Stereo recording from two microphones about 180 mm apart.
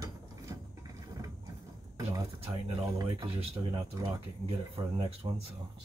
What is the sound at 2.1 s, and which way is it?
Speech, 20° right (ahead or behind).